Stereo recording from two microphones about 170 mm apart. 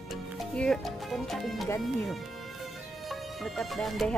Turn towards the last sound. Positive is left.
turn(degrees=0)  # may be behind; listen again after turning